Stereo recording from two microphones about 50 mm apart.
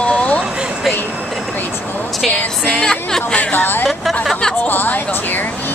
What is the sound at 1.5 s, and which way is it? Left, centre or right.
Vehicle, left.